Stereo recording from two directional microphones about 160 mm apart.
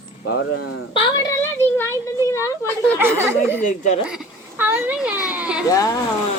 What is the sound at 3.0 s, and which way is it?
Speech, 15° right (ahead or behind).